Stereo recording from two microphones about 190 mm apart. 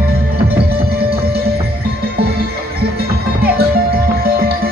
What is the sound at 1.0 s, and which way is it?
Music, 55° right (ahead or behind).